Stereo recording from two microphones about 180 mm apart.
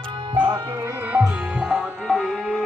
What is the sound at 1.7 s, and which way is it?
Music, centre (ahead or behind).